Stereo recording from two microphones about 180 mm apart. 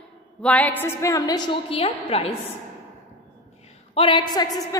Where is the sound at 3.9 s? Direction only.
25° left (ahead or behind).